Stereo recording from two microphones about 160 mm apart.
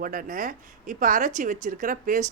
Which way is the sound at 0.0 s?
60° right (ahead or behind).